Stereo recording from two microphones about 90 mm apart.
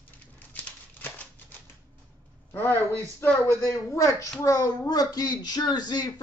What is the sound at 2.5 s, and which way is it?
Speech, 25° left (ahead or behind).